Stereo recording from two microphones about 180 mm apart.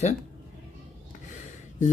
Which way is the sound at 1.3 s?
45° left (ahead or behind).